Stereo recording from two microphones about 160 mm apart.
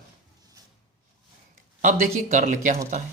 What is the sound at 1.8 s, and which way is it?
Speech, 50° right (ahead or behind).